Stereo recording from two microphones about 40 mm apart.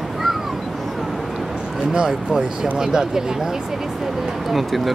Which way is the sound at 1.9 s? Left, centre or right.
Right.